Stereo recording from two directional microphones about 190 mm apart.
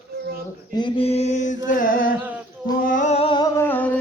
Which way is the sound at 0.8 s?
25° left (ahead or behind).